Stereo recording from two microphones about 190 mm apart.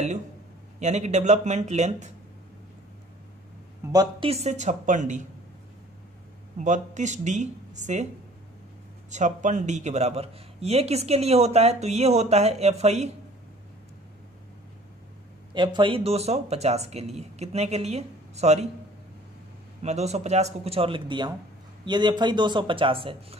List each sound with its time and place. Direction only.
0.7 s speech: 35° right (ahead or behind)
3.9 s a man's voice: 20° right (ahead or behind)
4.3 s speech: 35° right (ahead or behind)
6.6 s speech: 40° right (ahead or behind)
9.1 s speech: 40° right (ahead or behind)
15.5 s speech: 25° right (ahead or behind)
19.8 s a man's voice: 35° right (ahead or behind)